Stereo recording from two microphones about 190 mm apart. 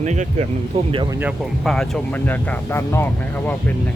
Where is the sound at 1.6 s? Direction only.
Centre (ahead or behind).